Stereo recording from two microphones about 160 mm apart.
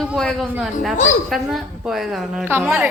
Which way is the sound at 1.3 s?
Centre (ahead or behind).